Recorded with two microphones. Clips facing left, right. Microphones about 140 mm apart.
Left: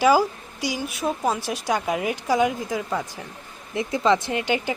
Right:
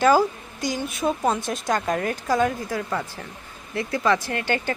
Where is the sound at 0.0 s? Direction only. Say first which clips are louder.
Even; 10° left (ahead or behind).